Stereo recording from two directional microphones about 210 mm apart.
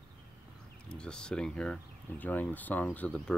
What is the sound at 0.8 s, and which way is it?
Speech, 5° left (ahead or behind).